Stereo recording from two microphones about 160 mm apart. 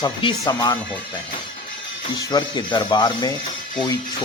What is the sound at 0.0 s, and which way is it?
Speech, 25° left (ahead or behind).